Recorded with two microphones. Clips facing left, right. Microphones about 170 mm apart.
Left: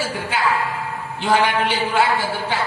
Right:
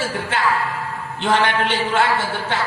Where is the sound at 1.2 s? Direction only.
5° left (ahead or behind).